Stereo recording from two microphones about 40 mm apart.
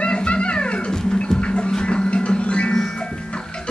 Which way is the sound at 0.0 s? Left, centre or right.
Left.